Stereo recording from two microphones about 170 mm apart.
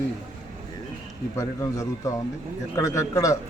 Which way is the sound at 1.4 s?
20° left (ahead or behind).